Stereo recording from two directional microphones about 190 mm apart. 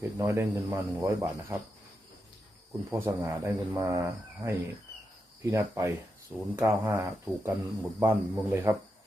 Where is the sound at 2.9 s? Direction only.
15° right (ahead or behind).